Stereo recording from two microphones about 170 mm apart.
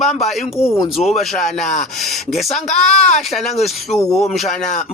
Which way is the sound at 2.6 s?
45° left (ahead or behind).